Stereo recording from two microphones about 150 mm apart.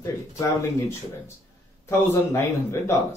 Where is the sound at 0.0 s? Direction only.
20° left (ahead or behind).